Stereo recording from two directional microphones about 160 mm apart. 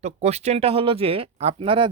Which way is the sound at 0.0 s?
40° right (ahead or behind).